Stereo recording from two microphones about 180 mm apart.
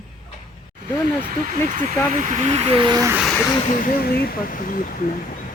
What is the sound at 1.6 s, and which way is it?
Speech, 45° right (ahead or behind).